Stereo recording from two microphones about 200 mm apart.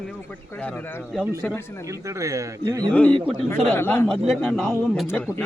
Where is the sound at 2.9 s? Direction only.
5° left (ahead or behind).